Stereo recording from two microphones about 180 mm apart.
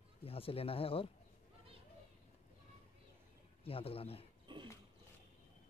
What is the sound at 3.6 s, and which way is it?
Speech, 30° left (ahead or behind).